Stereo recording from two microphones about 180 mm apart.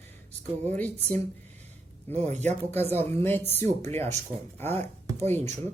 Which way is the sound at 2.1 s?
40° right (ahead or behind).